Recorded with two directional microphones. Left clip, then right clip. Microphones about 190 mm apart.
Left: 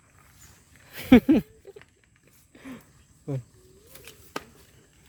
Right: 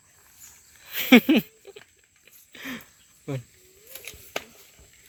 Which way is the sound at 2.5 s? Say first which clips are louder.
Right 8 dB; centre (ahead or behind).